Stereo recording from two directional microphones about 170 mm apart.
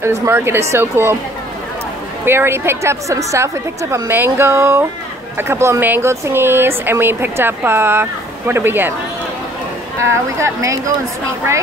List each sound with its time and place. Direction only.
0.0 s speech: 15° right (ahead or behind)
2.2 s speech: 15° right (ahead or behind)
10.0 s speech: 15° right (ahead or behind)